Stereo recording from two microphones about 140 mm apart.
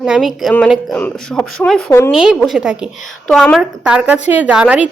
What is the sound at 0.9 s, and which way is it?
A woman's voice, 10° left (ahead or behind).